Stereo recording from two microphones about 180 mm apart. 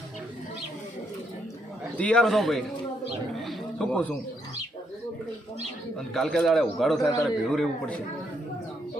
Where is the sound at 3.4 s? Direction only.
5° left (ahead or behind).